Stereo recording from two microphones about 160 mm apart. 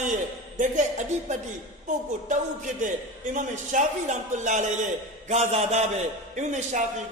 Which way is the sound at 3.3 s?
50° right (ahead or behind).